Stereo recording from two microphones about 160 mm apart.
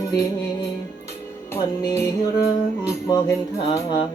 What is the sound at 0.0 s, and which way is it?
Music, 25° left (ahead or behind).